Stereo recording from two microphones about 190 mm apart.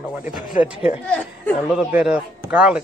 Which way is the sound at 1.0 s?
5° left (ahead or behind).